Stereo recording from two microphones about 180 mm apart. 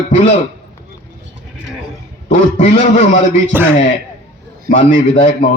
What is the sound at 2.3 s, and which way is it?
Speech, 40° left (ahead or behind).